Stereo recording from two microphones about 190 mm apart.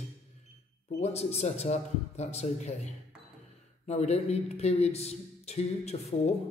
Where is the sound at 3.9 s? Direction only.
35° left (ahead or behind).